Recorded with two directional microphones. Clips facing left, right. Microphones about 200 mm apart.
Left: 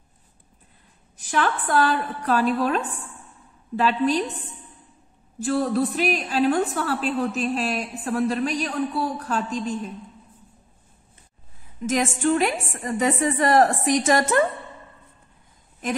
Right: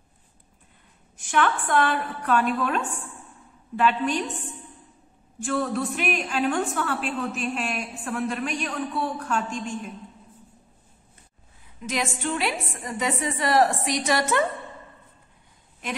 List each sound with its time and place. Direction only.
1.1 s a woman's voice: 35° left (ahead or behind)
5.4 s a woman's voice: 35° left (ahead or behind)
11.8 s a woman's voice: 45° left (ahead or behind)